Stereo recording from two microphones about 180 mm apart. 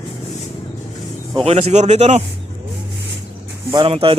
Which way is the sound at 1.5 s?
40° right (ahead or behind).